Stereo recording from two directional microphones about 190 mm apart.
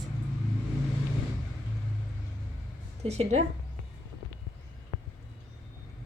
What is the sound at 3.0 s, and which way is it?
Speech, 35° right (ahead or behind).